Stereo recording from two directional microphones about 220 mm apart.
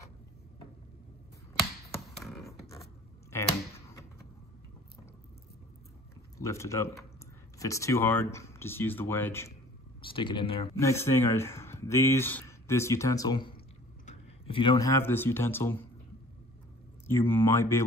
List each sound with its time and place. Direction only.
2.2 s beatboxing: centre (ahead or behind)
6.3 s speech: 15° left (ahead or behind)
10.0 s speech: 20° left (ahead or behind)
10.8 s speech: 10° left (ahead or behind)
17.0 s speech: 10° left (ahead or behind)